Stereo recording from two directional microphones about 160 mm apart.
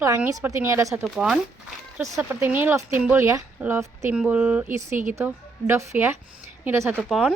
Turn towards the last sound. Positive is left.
turn(degrees=0)  # may be behind; listen again after turning